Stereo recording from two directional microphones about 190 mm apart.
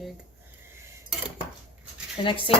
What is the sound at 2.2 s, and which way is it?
Speech, 25° left (ahead or behind).